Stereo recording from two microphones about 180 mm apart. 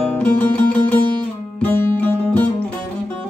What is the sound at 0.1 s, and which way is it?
Music, 10° left (ahead or behind).